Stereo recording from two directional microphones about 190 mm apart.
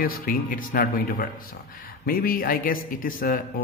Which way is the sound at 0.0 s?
50° left (ahead or behind).